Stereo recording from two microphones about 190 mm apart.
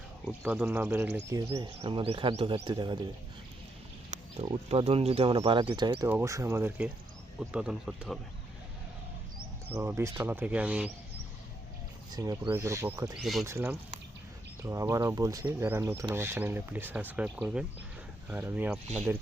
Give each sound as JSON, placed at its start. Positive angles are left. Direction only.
{"t": 0.3, "sound": "speech", "side_deg": -10}
{"t": 1.3, "sound": "speech", "side_deg": -20}
{"t": 1.8, "sound": "speech", "side_deg": -30}
{"t": 4.1, "sound": "speech", "side_deg": -30}
{"t": 9.7, "sound": "speech", "side_deg": -15}
{"t": 12.1, "sound": "speech", "side_deg": -20}